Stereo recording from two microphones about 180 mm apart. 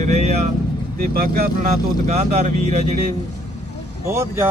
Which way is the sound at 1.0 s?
60° right (ahead or behind).